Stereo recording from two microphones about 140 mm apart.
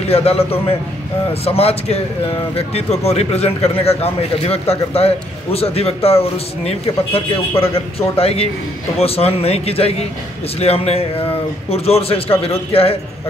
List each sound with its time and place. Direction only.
0.1 s speech: 45° left (ahead or behind)